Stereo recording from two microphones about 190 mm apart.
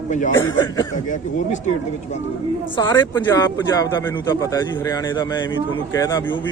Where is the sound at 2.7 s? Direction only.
25° left (ahead or behind).